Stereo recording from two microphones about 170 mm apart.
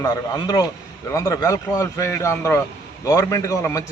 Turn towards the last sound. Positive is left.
turn(degrees=20)  # may be behind; listen again after turning